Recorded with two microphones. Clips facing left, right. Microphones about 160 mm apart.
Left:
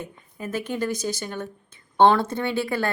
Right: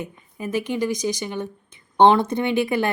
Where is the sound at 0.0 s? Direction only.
10° right (ahead or behind).